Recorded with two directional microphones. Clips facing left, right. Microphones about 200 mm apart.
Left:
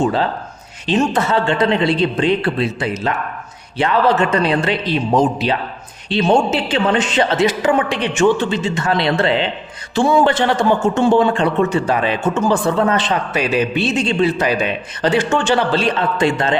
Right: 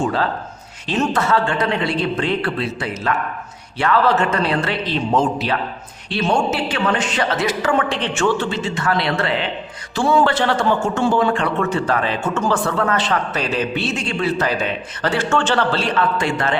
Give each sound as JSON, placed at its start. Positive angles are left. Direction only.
{"t": 0.9, "sound": "a man's voice", "side_deg": 20}